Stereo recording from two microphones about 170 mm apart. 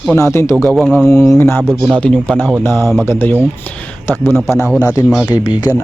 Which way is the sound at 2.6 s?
15° left (ahead or behind).